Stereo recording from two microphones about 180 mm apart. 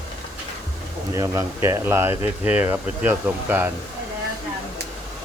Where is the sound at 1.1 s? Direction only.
15° right (ahead or behind).